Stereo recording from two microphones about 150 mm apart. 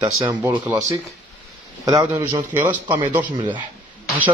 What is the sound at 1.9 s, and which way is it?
A man's voice, 25° right (ahead or behind).